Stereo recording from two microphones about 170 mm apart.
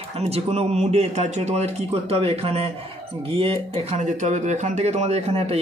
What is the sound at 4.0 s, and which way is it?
Speech, 45° right (ahead or behind).